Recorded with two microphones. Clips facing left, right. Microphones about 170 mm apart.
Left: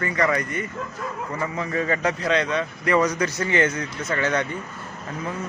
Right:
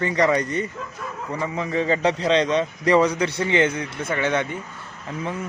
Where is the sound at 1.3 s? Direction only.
20° right (ahead or behind).